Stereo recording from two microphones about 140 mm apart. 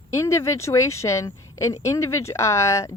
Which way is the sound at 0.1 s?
20° left (ahead or behind).